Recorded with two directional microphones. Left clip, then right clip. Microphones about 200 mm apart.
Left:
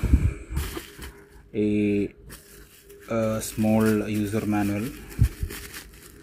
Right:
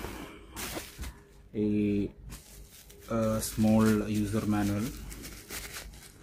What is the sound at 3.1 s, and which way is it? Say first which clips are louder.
Speech: left 5 dB; 10° left (ahead or behind).